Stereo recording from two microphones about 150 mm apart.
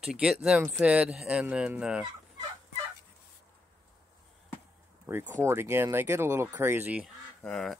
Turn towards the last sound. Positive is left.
turn(degrees=5)  # may be behind; listen again after turning